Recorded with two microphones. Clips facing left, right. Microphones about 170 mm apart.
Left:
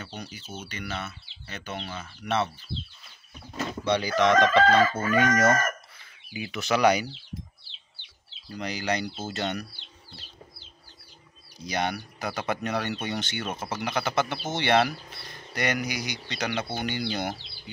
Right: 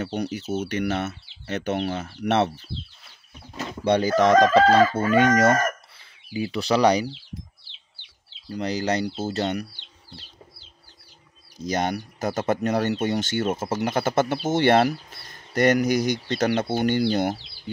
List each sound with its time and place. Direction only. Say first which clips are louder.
0.0 s speech: right 12 dB; 65° right (ahead or behind)
3.8 s chicken: right 5 dB; 50° right (ahead or behind); by 7.1 s 35° right (ahead or behind)
8.5 s chicken: right 5 dB; 35° right (ahead or behind)
11.5 s speech: right 4 dB; 45° right (ahead or behind)